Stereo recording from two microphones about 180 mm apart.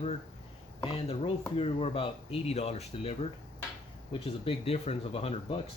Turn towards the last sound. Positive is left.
turn(degrees=30)  # may be behind; listen again after turning